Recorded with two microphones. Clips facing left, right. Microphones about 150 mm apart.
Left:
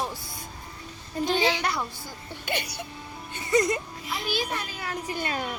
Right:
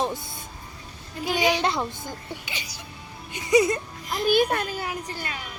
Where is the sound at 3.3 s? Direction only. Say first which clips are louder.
Right 4 dB; 10° right (ahead or behind).